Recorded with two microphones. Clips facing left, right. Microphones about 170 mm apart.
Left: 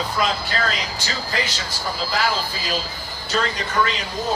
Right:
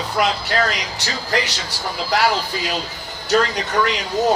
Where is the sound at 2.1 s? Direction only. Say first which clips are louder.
Right 6 dB; 70° right (ahead or behind).